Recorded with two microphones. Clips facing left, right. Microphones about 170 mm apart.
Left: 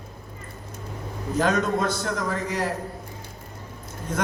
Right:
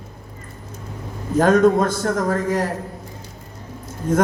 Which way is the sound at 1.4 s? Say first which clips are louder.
Right 9 dB; 50° right (ahead or behind).